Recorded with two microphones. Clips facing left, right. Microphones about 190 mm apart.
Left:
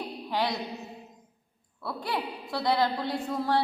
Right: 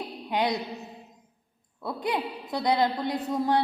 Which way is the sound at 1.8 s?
20° right (ahead or behind).